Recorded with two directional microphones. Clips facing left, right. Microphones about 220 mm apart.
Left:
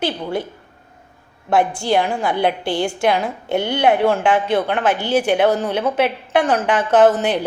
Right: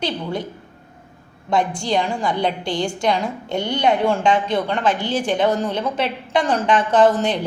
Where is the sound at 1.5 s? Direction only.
5° left (ahead or behind).